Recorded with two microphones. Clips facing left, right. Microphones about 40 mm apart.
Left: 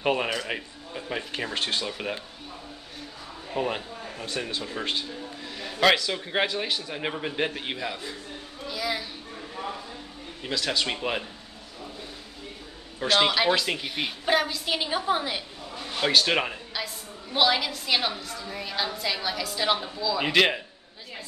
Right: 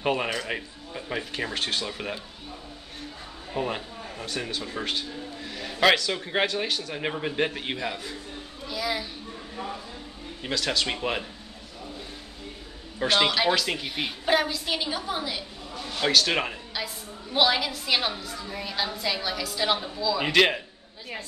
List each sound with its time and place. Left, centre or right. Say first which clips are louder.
0.0 s a woman's voice: left 1 dB; centre
3.5 s a man's voice: left 1 dB; centre
4.7 s a sound: even; centre
5.9 s a woman's voice: even; centre
8.6 s a sound: right 1 dB; centre
10.5 s a woman's voice: even; centre
13.0 s a woman's voice: even; centre
14.8 s a woman's voice: left 4 dB; centre